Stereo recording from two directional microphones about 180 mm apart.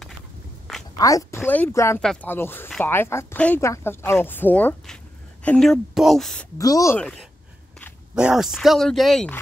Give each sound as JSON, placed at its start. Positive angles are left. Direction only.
{"t": 0.9, "sound": "speech", "side_deg": 20}
{"t": 6.6, "sound": "speech", "side_deg": 20}
{"t": 8.1, "sound": "speech", "side_deg": -5}